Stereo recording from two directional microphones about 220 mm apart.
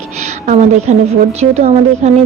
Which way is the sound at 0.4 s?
30° right (ahead or behind).